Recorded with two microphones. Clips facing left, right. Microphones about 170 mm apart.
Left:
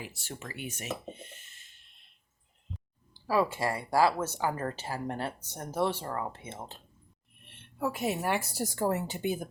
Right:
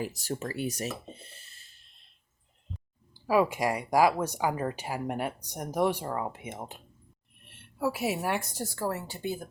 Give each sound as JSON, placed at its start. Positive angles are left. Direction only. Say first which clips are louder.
{"t": 0.0, "sound": "speech", "louder": "right 9 dB", "side_deg": -40}
{"t": 3.2, "sound": "speech", "louder": "right 3 dB", "side_deg": -15}
{"t": 7.4, "sound": "speech", "louder": "right 3 dB", "side_deg": 0}
{"t": 8.6, "sound": "speech", "louder": "left 3 dB", "side_deg": 20}